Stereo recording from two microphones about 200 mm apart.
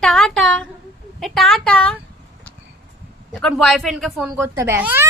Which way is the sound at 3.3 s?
5° left (ahead or behind).